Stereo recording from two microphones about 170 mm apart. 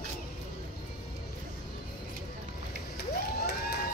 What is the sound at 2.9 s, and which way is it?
Cheering, 70° left (ahead or behind).